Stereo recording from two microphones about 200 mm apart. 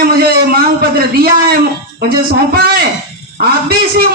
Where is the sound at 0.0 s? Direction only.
50° right (ahead or behind).